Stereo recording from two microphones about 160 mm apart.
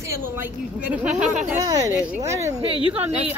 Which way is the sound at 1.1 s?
50° right (ahead or behind).